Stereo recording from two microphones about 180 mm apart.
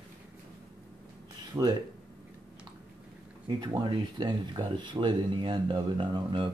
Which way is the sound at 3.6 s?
25° right (ahead or behind).